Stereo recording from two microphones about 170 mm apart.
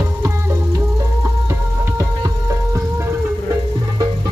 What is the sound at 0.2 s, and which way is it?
Music, 20° right (ahead or behind).